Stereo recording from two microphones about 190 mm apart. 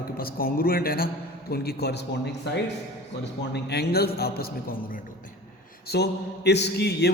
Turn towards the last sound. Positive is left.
turn(degrees=60)  # may be behind; listen again after turning